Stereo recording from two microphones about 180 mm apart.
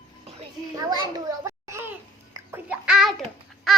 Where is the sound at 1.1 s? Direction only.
15° right (ahead or behind).